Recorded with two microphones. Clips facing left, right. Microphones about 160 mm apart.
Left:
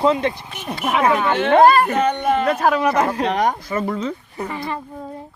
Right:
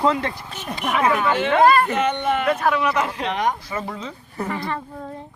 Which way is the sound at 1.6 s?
30° left (ahead or behind).